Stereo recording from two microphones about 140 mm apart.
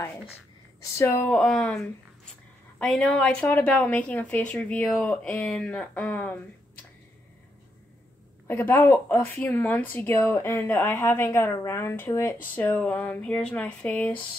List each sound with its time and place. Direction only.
0.9 s speech: 20° left (ahead or behind)
1.3 s a woman's voice: 5° left (ahead or behind)
8.5 s a woman's voice: 15° left (ahead or behind)